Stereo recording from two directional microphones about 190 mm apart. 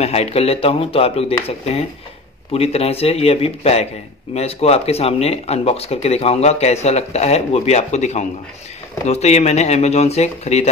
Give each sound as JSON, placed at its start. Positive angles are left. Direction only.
{"t": 0.0, "sound": "speech", "side_deg": 35}
{"t": 2.5, "sound": "speech", "side_deg": 30}